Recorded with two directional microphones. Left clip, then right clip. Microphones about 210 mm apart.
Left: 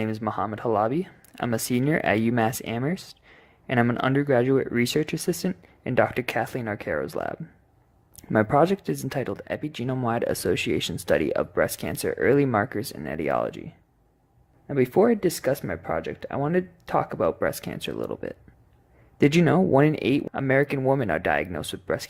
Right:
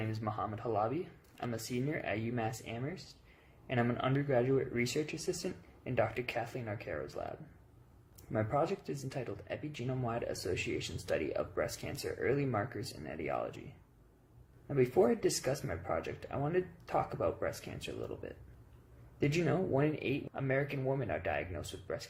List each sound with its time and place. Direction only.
0.0 s speech: 45° left (ahead or behind)
14.7 s speech: 40° left (ahead or behind)